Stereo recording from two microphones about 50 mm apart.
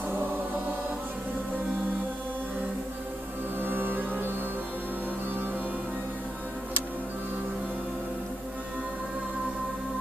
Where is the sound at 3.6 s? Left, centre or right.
Right.